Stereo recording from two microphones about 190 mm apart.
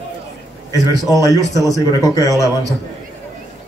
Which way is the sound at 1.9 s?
20° left (ahead or behind).